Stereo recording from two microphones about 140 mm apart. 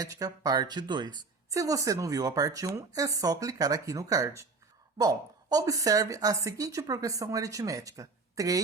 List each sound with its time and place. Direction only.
0.0 s speech: 25° right (ahead or behind)